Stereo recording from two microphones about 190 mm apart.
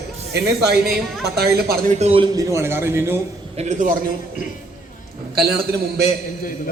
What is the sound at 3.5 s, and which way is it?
Speech, 35° right (ahead or behind).